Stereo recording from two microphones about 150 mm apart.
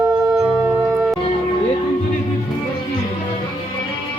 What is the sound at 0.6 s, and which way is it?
Music, 15° right (ahead or behind).